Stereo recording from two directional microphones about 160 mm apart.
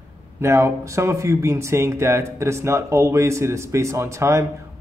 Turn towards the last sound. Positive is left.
turn(degrees=-20)  # may be behind; listen again after turning